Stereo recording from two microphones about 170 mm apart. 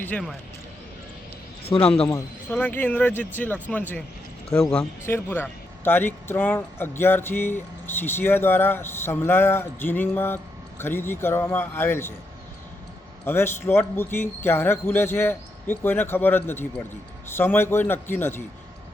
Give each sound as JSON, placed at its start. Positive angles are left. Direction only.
{"t": 0.0, "sound": "speech", "side_deg": 5}
{"t": 1.6, "sound": "speech", "side_deg": 35}
{"t": 2.0, "sound": "a man's voice", "side_deg": 20}
{"t": 5.0, "sound": "a man's voice", "side_deg": 10}
{"t": 13.2, "sound": "a man's voice", "side_deg": 15}